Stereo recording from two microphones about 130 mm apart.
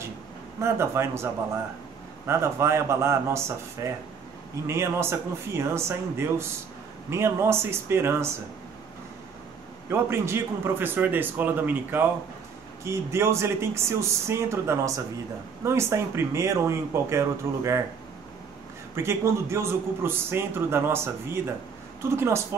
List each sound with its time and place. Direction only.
0.6 s a man's voice: 20° right (ahead or behind)
9.8 s a man's voice: 20° right (ahead or behind)
18.9 s a man's voice: 20° right (ahead or behind)